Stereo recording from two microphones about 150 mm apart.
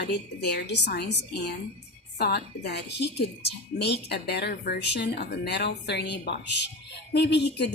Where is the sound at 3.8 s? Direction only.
90° left.